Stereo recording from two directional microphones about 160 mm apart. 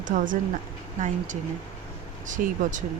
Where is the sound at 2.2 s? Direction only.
50° right (ahead or behind).